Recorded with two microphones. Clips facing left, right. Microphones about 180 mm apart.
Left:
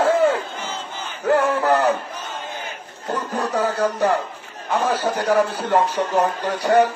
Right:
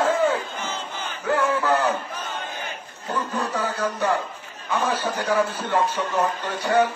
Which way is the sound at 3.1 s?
40° left (ahead or behind).